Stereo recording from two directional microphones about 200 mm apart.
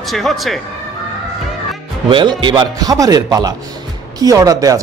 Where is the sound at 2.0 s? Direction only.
25° right (ahead or behind).